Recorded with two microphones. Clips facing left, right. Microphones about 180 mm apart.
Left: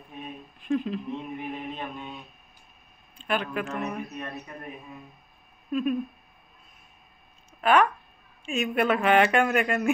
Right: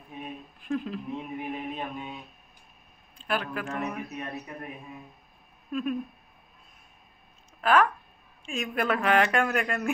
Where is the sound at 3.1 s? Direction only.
Centre (ahead or behind).